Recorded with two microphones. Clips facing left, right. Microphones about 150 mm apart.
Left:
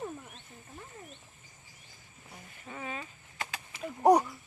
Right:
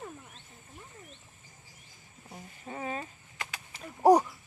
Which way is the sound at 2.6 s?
35° right (ahead or behind).